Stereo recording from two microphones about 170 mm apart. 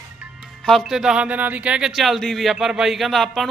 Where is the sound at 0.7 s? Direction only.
Centre (ahead or behind).